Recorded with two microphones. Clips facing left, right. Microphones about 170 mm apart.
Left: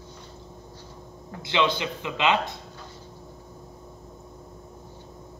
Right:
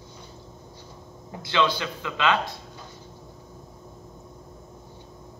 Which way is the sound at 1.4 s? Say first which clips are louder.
Even; 20° left (ahead or behind).